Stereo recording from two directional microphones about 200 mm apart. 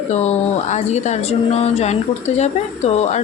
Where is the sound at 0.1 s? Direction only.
35° left (ahead or behind).